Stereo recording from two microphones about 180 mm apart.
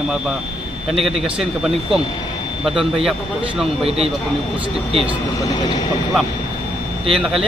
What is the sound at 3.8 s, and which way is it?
Speech, 35° right (ahead or behind).